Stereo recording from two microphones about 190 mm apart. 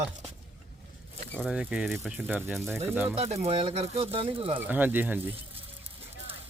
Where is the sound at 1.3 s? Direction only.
Centre (ahead or behind).